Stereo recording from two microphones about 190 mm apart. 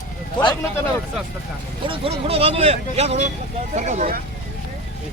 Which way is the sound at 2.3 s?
30° right (ahead or behind).